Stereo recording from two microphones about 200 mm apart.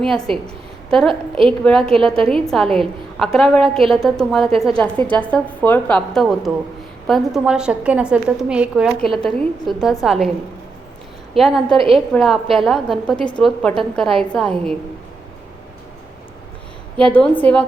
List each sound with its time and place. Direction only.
0.0 s a woman's voice: centre (ahead or behind)
11.3 s a woman's voice: centre (ahead or behind)
11.8 s a woman's voice: 30° right (ahead or behind)
12.1 s a woman's voice: centre (ahead or behind)
17.0 s a woman's voice: 5° left (ahead or behind)